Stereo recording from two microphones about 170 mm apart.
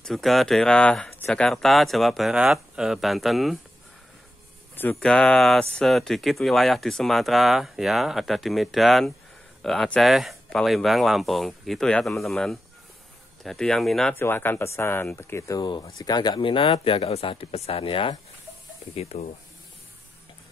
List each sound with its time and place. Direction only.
0.0 s speech: centre (ahead or behind)
4.7 s speech: 10° left (ahead or behind); by 19.2 s 40° left (ahead or behind)